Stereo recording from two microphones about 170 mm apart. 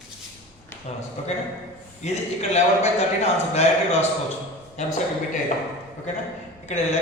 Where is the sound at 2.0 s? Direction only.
40° left (ahead or behind).